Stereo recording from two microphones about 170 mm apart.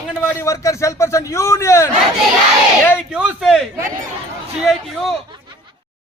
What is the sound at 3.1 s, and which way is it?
Speech, 5° right (ahead or behind).